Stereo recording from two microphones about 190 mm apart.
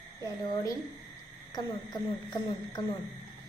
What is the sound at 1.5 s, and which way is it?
Speech, 20° left (ahead or behind).